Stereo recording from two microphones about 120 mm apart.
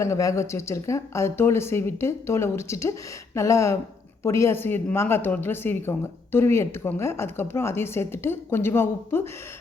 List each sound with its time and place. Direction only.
0.0 s a woman's voice: 25° left (ahead or behind)